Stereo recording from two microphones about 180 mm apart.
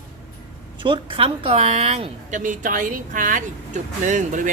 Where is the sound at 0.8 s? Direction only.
30° right (ahead or behind).